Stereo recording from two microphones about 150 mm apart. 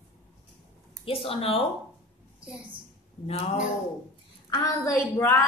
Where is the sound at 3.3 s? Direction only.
40° left (ahead or behind).